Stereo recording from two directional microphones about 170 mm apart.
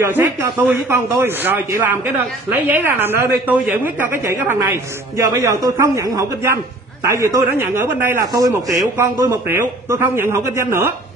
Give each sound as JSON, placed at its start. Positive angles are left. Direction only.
{"t": 0.0, "sound": "a man's voice", "side_deg": -15}